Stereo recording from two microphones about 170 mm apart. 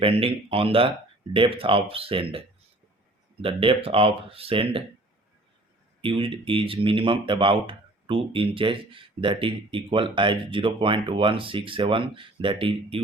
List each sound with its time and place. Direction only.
0.0 s speech: 35° right (ahead or behind)
3.4 s speech: 30° right (ahead or behind)
6.0 s speech: 30° right (ahead or behind)